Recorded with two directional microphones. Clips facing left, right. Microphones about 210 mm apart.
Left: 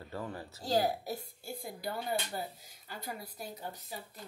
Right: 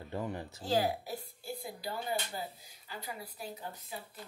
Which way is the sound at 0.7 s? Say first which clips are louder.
Left 1 dB; 40° left (ahead or behind).